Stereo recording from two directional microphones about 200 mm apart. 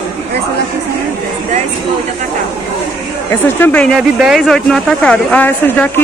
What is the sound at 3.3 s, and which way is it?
Speech, 10° left (ahead or behind).